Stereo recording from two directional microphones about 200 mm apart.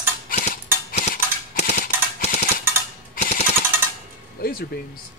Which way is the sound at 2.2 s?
40° left (ahead or behind).